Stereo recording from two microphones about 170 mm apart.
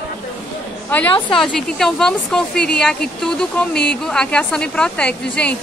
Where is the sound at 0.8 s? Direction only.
10° left (ahead or behind).